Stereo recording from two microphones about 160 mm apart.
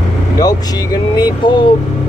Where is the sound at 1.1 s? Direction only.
30° left (ahead or behind).